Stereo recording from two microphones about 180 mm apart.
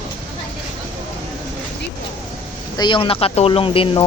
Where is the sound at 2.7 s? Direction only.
25° left (ahead or behind).